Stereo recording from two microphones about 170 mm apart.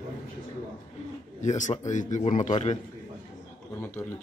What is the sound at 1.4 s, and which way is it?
Speech, 45° left (ahead or behind).